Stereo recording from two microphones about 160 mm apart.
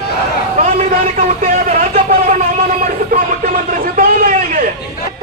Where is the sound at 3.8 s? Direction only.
60° right (ahead or behind).